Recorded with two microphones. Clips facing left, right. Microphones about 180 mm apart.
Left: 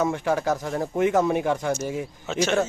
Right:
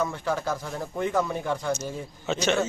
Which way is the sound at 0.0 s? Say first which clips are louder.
Left 4 dB; 45° left (ahead or behind).